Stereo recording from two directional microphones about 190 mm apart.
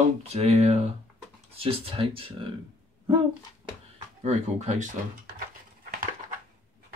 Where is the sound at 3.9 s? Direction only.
35° right (ahead or behind).